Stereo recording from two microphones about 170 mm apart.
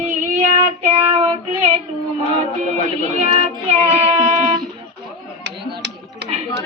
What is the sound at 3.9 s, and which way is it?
Music, 40° right (ahead or behind).